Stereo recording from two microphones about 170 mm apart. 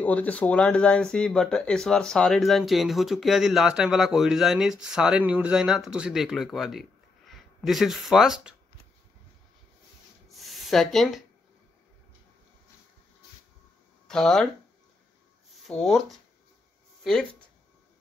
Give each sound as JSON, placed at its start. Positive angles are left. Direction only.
{"t": 0.0, "sound": "speech", "side_deg": 10}
{"t": 10.2, "sound": "a sound", "side_deg": 0}
{"t": 14.0, "sound": "speech", "side_deg": 5}
{"t": 15.5, "sound": "speech", "side_deg": 0}